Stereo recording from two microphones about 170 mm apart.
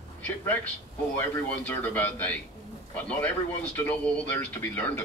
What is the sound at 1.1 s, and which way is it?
A man's voice, 10° left (ahead or behind).